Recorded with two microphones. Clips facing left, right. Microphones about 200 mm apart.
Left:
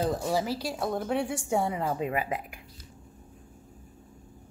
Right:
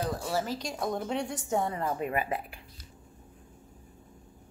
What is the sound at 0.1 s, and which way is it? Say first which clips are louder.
A woman's voice: left 3 dB; 15° left (ahead or behind).